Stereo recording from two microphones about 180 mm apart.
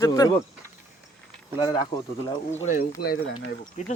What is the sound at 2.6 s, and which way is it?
Speech, 50° left (ahead or behind).